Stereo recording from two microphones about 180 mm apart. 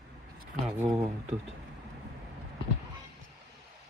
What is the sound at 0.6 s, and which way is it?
Speech, 10° right (ahead or behind).